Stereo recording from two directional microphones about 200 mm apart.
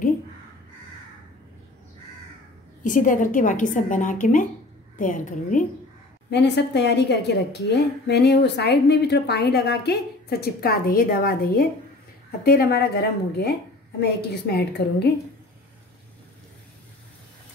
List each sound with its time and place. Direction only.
2.8 s a woman's voice: 40° left (ahead or behind)
6.3 s a woman's voice: 60° left (ahead or behind)